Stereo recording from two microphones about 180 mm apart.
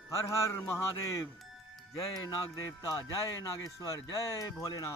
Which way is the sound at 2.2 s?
15° left (ahead or behind).